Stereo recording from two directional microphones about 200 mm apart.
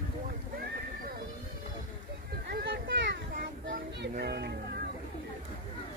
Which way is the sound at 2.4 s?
60° right (ahead or behind).